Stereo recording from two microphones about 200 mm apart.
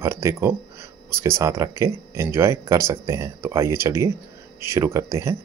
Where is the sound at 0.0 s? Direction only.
15° right (ahead or behind).